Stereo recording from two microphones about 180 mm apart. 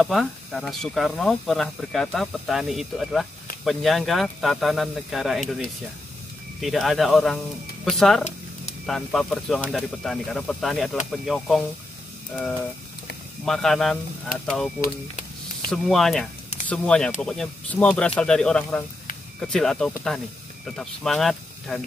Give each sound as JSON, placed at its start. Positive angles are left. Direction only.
{"t": 0.0, "sound": "speech", "side_deg": 0}
{"t": 13.5, "sound": "speech", "side_deg": 0}
{"t": 14.8, "sound": "a sound", "side_deg": 55}
{"t": 15.7, "sound": "speech", "side_deg": 0}